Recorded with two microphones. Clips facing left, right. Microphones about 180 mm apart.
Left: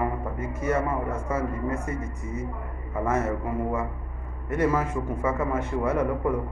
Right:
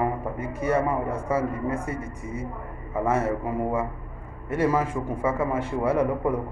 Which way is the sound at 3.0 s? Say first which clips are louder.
Right 2 dB; 30° right (ahead or behind).